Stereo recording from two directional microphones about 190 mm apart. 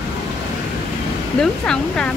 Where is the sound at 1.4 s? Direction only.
5° left (ahead or behind).